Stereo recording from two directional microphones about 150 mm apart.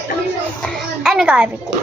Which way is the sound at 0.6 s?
Centre (ahead or behind).